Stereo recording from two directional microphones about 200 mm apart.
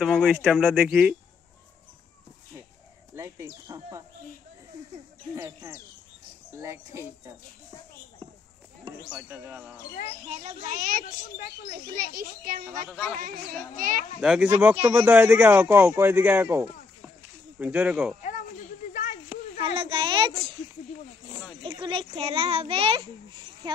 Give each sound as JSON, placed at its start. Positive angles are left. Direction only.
{"t": 0.0, "sound": "speech", "side_deg": 0}
{"t": 3.2, "sound": "speech", "side_deg": -15}
{"t": 5.3, "sound": "speech", "side_deg": -15}
{"t": 9.1, "sound": "speech", "side_deg": -10}
{"t": 10.4, "sound": "a child's voice", "side_deg": -45}
{"t": 12.8, "sound": "speech", "side_deg": 5}
{"t": 13.7, "sound": "a child's voice", "side_deg": -40}
{"t": 14.2, "sound": "speech", "side_deg": -5}
{"t": 18.2, "sound": "a sound", "side_deg": 40}
{"t": 19.6, "sound": "a child's voice", "side_deg": -25}
{"t": 21.6, "sound": "a child's voice", "side_deg": -25}